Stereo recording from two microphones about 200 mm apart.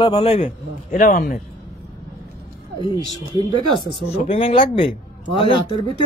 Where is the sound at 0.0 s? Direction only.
30° left (ahead or behind).